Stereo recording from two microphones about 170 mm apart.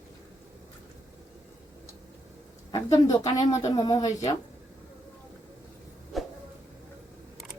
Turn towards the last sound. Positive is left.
turn(degrees=0)  # may be behind; listen again after turning